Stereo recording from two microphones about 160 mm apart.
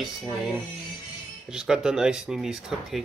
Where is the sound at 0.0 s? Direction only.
5° right (ahead or behind).